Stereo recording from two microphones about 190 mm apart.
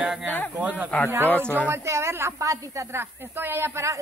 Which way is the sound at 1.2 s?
5° left (ahead or behind).